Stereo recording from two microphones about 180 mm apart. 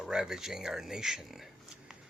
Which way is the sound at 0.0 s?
5° right (ahead or behind).